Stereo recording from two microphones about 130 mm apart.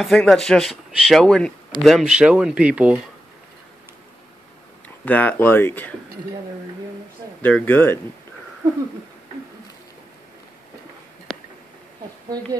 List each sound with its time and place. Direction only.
0.0 s speech: 5° left (ahead or behind)
4.8 s speech: 10° left (ahead or behind)
7.4 s speech: 15° left (ahead or behind)
11.3 s a sound: 5° left (ahead or behind)